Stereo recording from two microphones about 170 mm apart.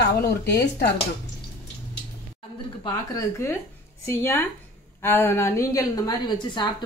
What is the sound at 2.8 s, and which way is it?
A woman's voice, 20° left (ahead or behind).